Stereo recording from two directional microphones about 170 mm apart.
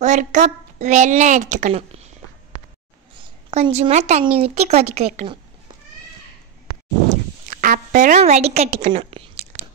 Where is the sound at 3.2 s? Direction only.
35° right (ahead or behind).